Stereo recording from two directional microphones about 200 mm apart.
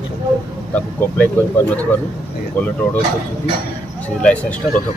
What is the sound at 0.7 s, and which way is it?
Speech, 10° left (ahead or behind).